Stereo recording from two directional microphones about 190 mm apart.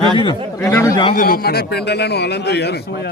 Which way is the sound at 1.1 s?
50° left (ahead or behind).